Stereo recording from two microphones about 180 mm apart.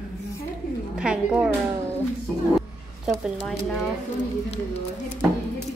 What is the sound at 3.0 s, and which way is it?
Speech, centre (ahead or behind).